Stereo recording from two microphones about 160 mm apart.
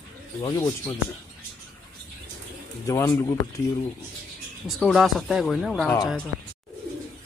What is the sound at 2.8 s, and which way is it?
Speech, 20° left (ahead or behind).